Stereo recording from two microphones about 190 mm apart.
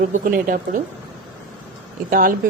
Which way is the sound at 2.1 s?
45° right (ahead or behind).